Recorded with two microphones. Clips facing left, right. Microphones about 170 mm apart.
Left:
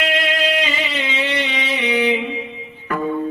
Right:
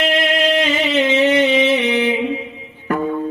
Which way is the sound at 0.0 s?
50° right (ahead or behind).